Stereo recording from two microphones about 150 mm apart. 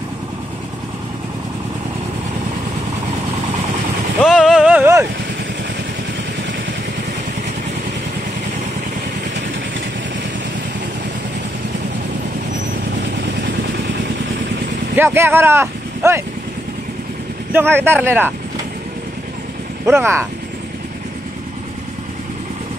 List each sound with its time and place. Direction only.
4.3 s a sound: 5° right (ahead or behind)
15.0 s speech: 15° right (ahead or behind)
17.5 s speech: 15° right (ahead or behind)
19.9 s speech: 15° right (ahead or behind)